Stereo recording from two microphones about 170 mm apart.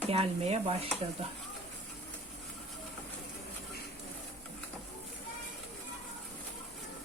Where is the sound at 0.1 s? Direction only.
35° right (ahead or behind).